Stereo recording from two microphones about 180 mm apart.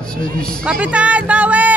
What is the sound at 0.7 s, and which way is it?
Speech, 5° right (ahead or behind).